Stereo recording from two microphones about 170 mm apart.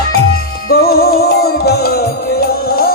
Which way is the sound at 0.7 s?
65° left (ahead or behind).